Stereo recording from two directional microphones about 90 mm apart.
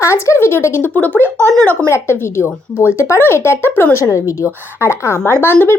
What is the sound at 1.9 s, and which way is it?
Speech, 30° left (ahead or behind).